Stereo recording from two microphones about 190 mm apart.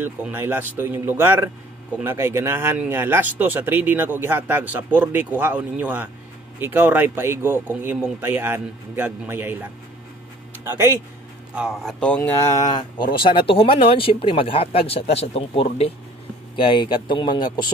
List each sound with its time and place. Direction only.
0.0 s speech: 10° right (ahead or behind)
10.6 s speech: 15° right (ahead or behind)
11.5 s speech: centre (ahead or behind); by 17.6 s 25° left (ahead or behind)